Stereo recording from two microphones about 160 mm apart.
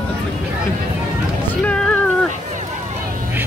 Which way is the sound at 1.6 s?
5° left (ahead or behind).